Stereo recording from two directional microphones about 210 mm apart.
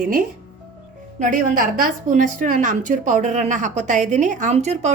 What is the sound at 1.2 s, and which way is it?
A woman's voice, 40° right (ahead or behind).